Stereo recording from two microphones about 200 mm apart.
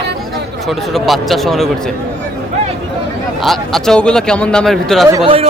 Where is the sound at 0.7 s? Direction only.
Centre (ahead or behind).